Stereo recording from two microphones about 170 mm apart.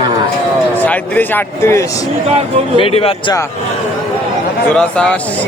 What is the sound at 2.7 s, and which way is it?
Speech, 35° left (ahead or behind).